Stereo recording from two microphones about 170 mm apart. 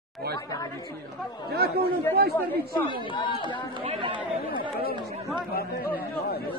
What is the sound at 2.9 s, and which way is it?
Speech, 30° left (ahead or behind).